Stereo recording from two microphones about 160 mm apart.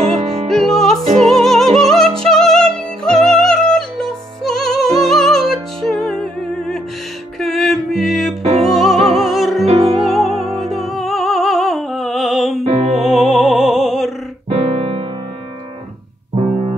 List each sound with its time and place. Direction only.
0.0 s music: 40° right (ahead or behind)
0.5 s music: centre (ahead or behind)
7.3 s music: centre (ahead or behind)
12.6 s music: 40° right (ahead or behind)
13.1 s opera: 5° right (ahead or behind)
14.5 s piano: 40° right (ahead or behind)